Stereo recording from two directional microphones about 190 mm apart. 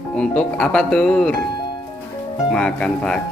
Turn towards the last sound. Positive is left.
turn(degrees=5)  # may be behind; listen again after turning